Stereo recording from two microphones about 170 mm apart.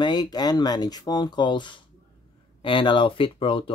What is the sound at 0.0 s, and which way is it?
Speech, 25° left (ahead or behind).